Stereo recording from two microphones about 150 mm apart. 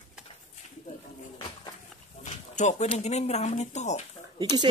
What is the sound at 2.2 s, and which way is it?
Speech, 50° left (ahead or behind).